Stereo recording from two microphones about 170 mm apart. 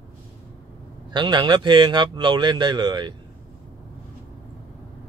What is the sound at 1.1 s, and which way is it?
Speech, 25° right (ahead or behind).